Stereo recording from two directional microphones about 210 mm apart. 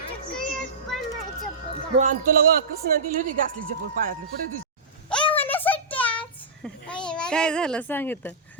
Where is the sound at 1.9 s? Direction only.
40° right (ahead or behind).